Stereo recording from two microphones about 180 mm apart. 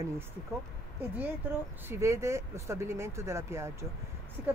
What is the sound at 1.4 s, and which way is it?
Speech, 10° right (ahead or behind).